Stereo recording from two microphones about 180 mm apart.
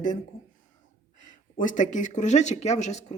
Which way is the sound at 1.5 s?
45° left (ahead or behind).